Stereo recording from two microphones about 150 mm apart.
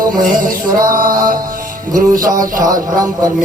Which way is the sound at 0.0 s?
65° right (ahead or behind).